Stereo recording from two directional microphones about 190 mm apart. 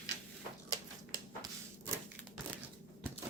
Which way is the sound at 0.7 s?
20° right (ahead or behind).